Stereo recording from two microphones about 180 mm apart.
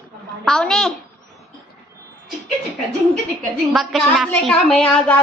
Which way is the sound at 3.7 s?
Centre (ahead or behind).